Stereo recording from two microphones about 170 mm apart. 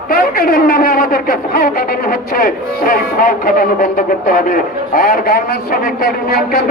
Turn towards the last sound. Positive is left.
turn(degrees=65)  # may be behind; listen again after turning